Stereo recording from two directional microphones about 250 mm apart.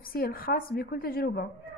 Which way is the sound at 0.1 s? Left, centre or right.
Left.